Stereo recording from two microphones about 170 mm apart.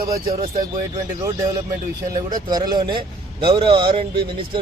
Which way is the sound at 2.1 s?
25° right (ahead or behind).